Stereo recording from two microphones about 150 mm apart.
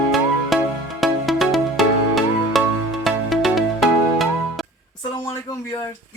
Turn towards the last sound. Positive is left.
turn(degrees=20)  # may be behind; listen again after turning